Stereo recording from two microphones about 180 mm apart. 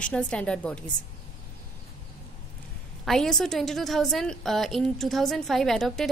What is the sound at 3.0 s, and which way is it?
A woman's voice, centre (ahead or behind).